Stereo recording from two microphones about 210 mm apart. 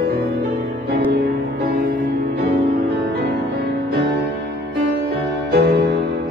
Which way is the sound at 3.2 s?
50° right (ahead or behind).